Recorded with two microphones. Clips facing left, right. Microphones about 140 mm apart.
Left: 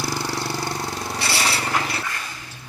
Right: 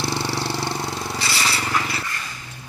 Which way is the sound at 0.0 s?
25° right (ahead or behind).